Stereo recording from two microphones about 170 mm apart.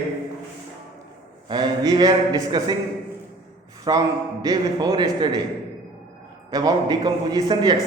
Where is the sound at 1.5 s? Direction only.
25° right (ahead or behind).